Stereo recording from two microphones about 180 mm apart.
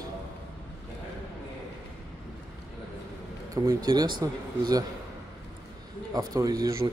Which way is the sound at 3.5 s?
20° right (ahead or behind).